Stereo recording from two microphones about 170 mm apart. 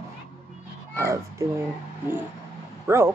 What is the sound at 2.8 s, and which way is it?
Speech, 15° right (ahead or behind).